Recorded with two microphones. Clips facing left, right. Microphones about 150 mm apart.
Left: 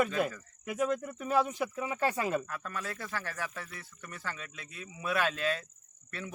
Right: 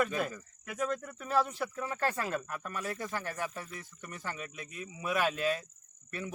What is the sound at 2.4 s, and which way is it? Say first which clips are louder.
Speech: right 1 dB; 20° right (ahead or behind).